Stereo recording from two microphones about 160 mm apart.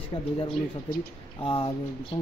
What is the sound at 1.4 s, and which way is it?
Speech, 35° left (ahead or behind).